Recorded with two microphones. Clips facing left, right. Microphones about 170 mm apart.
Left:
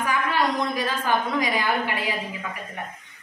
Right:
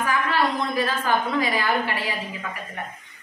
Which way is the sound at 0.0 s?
15° left (ahead or behind).